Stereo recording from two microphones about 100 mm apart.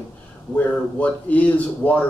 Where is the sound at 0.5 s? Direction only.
15° left (ahead or behind).